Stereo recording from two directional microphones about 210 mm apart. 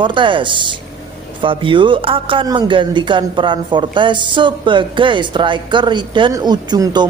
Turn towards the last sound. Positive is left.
turn(degrees=-20)  # may be behind; listen again after turning